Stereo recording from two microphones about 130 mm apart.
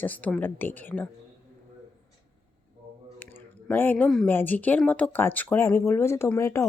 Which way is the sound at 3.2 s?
15° left (ahead or behind).